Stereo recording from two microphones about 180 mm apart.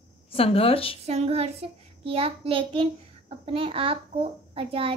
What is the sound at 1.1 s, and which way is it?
A child's voice, 35° right (ahead or behind).